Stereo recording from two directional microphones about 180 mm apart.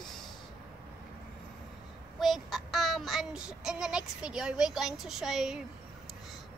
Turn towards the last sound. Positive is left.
turn(degrees=0)  # may be behind; listen again after turning